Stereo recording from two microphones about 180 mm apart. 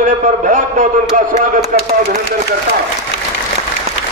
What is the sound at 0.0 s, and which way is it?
A man's voice, 50° right (ahead or behind).